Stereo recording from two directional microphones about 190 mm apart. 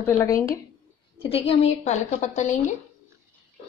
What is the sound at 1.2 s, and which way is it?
A woman's voice, 30° left (ahead or behind).